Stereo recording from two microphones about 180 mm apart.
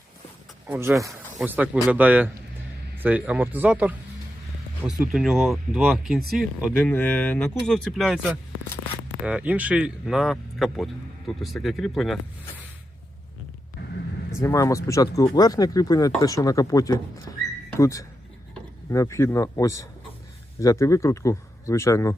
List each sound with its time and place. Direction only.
0.7 s speech: 15° right (ahead or behind)
6.7 s speech: 10° left (ahead or behind)
14.4 s speech: 15° left (ahead or behind)